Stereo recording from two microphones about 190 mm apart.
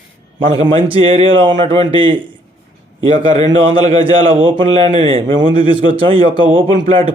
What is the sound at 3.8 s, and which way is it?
A man's voice, 30° right (ahead or behind).